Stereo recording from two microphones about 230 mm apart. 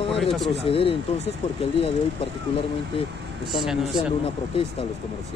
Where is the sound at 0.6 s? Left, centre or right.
Left.